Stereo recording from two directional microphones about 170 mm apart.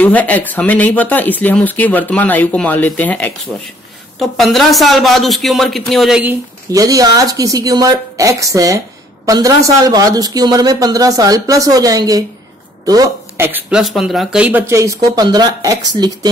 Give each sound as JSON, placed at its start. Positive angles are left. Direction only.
{"t": 0.0, "sound": "speech", "side_deg": 10}
{"t": 6.7, "sound": "a woman's voice", "side_deg": -20}
{"t": 13.5, "sound": "speech", "side_deg": -10}